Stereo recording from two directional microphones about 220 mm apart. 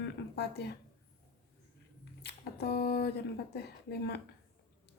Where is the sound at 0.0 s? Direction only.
50° left (ahead or behind).